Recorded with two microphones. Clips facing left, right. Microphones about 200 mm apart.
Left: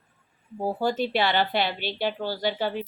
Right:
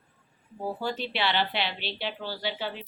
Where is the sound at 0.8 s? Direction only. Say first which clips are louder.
Left 7 dB; 45° left (ahead or behind).